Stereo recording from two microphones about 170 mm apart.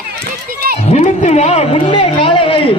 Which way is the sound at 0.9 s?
40° left (ahead or behind).